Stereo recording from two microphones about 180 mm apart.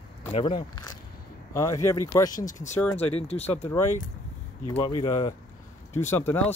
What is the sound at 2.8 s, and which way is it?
Speech, 10° left (ahead or behind).